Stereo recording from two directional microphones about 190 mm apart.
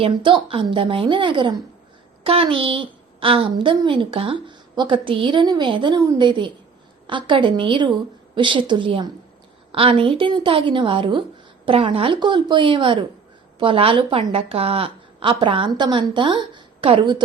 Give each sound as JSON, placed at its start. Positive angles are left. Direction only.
{"t": 0.0, "sound": "a woman's voice", "side_deg": -25}